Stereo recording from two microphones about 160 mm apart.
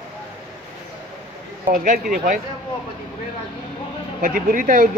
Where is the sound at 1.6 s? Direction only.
55° right (ahead or behind).